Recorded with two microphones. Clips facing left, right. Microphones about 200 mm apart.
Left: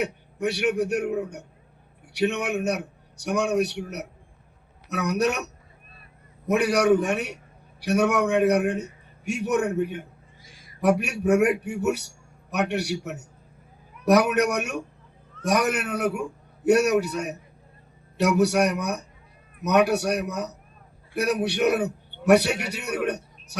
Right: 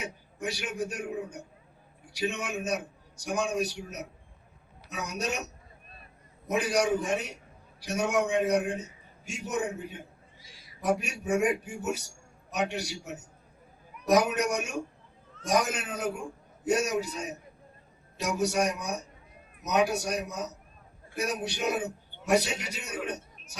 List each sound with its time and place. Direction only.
0.0 s a man's voice: 65° left (ahead or behind)
6.5 s a man's voice: 65° left (ahead or behind)
10.4 s a man's voice: 50° left (ahead or behind)